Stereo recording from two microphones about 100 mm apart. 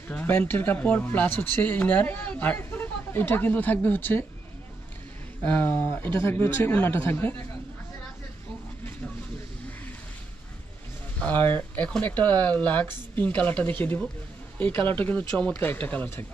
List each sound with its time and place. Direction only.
0.1 s speech: 20° left (ahead or behind)
5.4 s speech: 15° left (ahead or behind)
11.1 s speech: 15° left (ahead or behind)